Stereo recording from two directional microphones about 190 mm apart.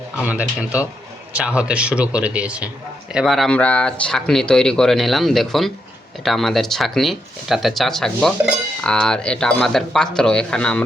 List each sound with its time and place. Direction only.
0.2 s speech: 5° right (ahead or behind)